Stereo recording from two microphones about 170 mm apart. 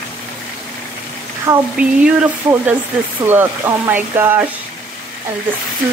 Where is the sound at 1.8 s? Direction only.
5° right (ahead or behind).